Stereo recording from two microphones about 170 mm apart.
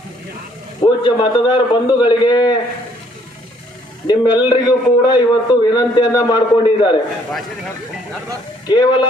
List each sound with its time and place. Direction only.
0.8 s a man's voice: 25° left (ahead or behind)
4.0 s a man's voice: 25° left (ahead or behind)
8.6 s a man's voice: 25° left (ahead or behind)